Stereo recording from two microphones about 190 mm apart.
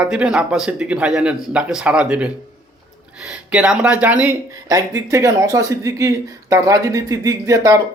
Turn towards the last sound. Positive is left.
turn(degrees=-15)  # may be behind; listen again after turning